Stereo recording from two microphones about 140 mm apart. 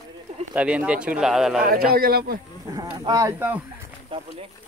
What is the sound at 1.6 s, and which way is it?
Speech, 90° right.